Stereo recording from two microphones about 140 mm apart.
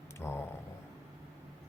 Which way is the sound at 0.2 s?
15° left (ahead or behind).